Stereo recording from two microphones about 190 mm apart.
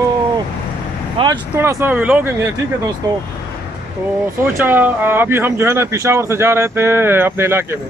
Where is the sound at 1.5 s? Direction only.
10° right (ahead or behind).